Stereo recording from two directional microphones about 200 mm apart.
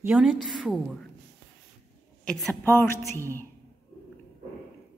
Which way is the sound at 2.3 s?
Centre (ahead or behind).